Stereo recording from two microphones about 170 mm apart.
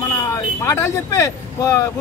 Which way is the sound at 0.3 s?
15° left (ahead or behind).